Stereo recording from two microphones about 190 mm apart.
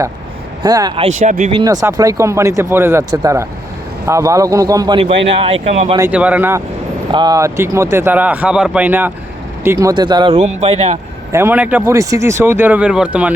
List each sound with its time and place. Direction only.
0.6 s a man's voice: 20° right (ahead or behind)
1.0 s speech: 40° right (ahead or behind)
1.5 s a man's voice: 20° right (ahead or behind); by 6.0 s 35° right (ahead or behind)
6.0 s speech: 5° right (ahead or behind)
7.1 s a man's voice: 20° right (ahead or behind)
11.3 s speech: 15° right (ahead or behind)